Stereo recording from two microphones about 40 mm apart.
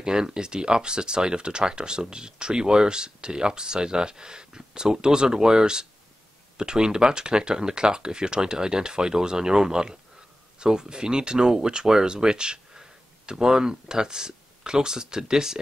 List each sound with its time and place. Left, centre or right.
0.0 s speech: centre